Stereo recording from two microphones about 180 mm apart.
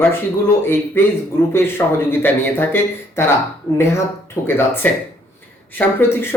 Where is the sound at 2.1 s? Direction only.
10° left (ahead or behind).